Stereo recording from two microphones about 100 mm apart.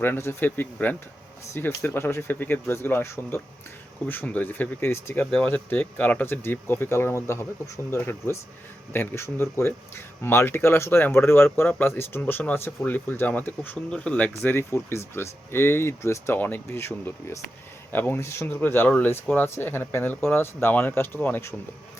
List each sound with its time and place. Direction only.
0.0 s speech: 20° left (ahead or behind)
5.2 s speech: 10° left (ahead or behind)
5.5 s speech: 20° left (ahead or behind)